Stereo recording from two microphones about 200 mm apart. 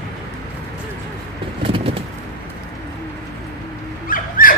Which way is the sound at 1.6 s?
25° right (ahead or behind).